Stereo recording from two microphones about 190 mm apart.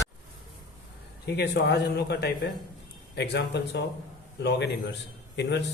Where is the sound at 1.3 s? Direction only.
60° left (ahead or behind).